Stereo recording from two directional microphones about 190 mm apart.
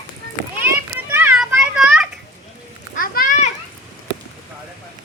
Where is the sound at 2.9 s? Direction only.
50° left (ahead or behind).